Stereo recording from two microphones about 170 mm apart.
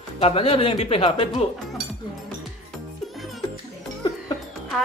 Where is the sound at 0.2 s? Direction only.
35° left (ahead or behind).